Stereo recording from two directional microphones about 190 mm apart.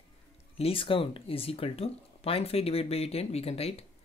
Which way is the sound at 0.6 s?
30° left (ahead or behind).